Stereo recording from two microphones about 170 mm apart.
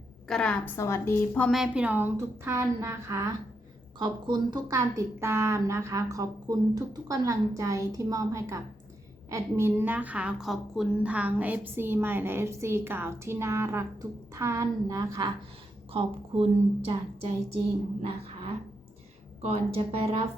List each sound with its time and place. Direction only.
0.3 s a woman's voice: 5° left (ahead or behind)
1.5 s a woman's voice: centre (ahead or behind)
3.9 s a woman's voice: 25° right (ahead or behind)
15.9 s a woman's voice: 35° right (ahead or behind)
18.0 s a woman's voice: 35° right (ahead or behind)